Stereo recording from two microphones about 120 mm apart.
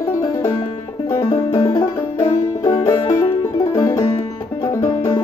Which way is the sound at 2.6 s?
30° left (ahead or behind).